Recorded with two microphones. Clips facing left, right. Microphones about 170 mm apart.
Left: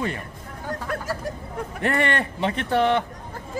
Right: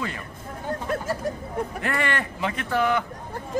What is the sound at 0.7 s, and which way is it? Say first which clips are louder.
Chatter: right 2 dB; 25° right (ahead or behind).